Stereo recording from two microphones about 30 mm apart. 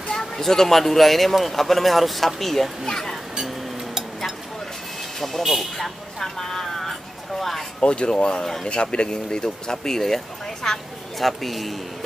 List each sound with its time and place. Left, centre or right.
0.2 s speech: centre
3.4 s a sound: centre
5.4 s speech: centre
5.8 s speech: centre
7.8 s speech: left
9.4 s speech: centre
11.1 s speech: centre